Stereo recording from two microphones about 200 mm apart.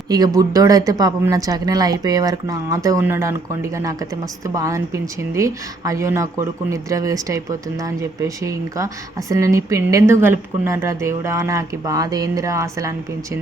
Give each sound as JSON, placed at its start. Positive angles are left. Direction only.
{"t": 0.1, "sound": "a woman's voice", "side_deg": -20}